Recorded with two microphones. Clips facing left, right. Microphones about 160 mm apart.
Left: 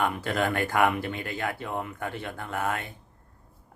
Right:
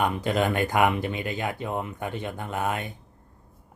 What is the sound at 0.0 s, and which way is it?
Speech, 20° right (ahead or behind).